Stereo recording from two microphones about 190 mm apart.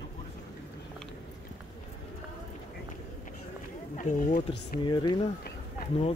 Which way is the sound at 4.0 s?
45° left (ahead or behind).